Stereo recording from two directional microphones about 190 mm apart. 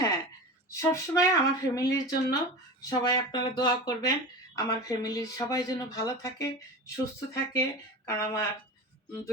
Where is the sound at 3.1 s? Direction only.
20° left (ahead or behind).